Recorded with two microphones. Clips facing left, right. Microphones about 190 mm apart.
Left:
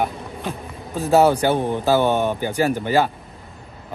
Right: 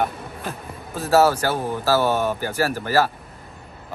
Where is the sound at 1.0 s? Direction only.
15° left (ahead or behind).